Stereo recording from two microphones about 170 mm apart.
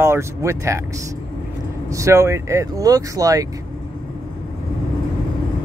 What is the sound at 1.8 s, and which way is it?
Speech, 20° right (ahead or behind).